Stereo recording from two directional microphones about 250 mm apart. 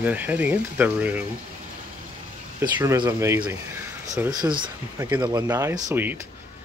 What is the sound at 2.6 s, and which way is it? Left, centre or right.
Speech, centre.